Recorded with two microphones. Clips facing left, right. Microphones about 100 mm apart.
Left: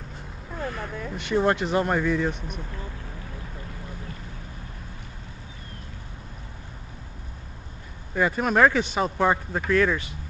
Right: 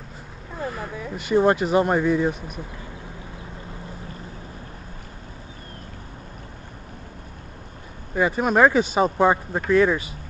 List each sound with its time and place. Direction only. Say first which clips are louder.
0.6 s speech: right 2 dB; 5° right (ahead or behind)
8.1 s speech: right 2 dB; 10° right (ahead or behind)